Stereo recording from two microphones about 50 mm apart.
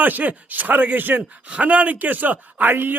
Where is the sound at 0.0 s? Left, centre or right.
Right.